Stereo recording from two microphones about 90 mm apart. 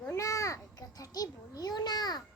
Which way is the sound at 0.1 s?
35° left (ahead or behind).